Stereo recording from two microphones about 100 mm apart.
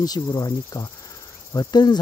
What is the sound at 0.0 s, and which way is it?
Speech, 40° left (ahead or behind).